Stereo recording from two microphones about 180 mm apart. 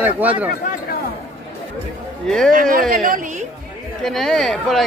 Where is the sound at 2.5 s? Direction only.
50° right (ahead or behind).